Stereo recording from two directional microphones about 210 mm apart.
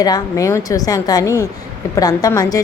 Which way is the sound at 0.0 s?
15° left (ahead or behind).